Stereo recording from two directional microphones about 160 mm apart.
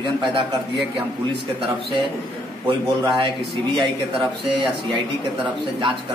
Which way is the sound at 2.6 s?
30° right (ahead or behind).